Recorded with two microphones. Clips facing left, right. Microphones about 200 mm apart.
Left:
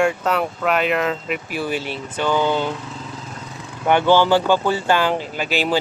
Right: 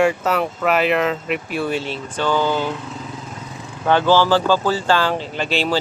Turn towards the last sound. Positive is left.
turn(degrees=10)  # may be behind; listen again after turning